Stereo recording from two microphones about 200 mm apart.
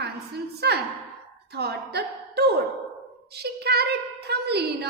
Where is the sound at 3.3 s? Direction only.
55° right (ahead or behind).